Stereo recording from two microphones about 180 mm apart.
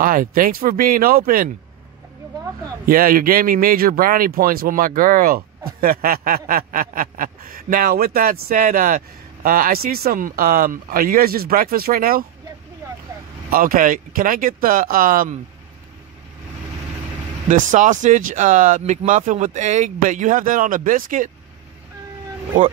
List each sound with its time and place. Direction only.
0.0 s speech: 50° right (ahead or behind)
2.9 s speech: 50° right (ahead or behind)
13.5 s speech: 50° right (ahead or behind)
17.5 s speech: 45° right (ahead or behind)